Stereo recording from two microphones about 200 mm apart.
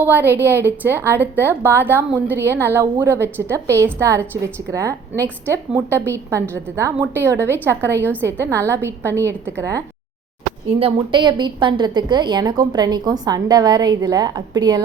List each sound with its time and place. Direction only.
0.0 s a woman's voice: 10° right (ahead or behind)
10.8 s a woman's voice: 25° right (ahead or behind)